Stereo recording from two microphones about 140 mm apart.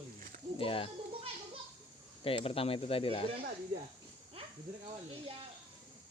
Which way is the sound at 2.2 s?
40° left (ahead or behind).